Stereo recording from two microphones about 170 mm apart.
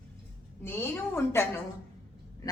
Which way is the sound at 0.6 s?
15° left (ahead or behind).